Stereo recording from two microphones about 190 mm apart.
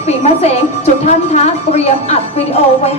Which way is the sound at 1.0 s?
35° left (ahead or behind).